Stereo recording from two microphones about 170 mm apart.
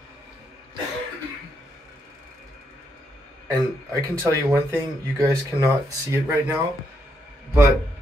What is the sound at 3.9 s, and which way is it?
Speech, 20° right (ahead or behind).